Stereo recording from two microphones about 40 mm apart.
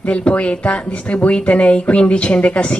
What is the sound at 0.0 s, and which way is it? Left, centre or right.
Speech, left.